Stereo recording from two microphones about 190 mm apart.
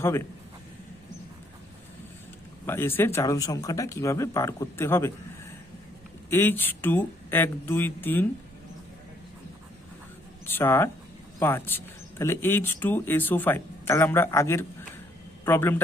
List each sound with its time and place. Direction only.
2.6 s speech: 10° left (ahead or behind)
6.3 s speech: 10° left (ahead or behind)
10.4 s speech: 10° left (ahead or behind)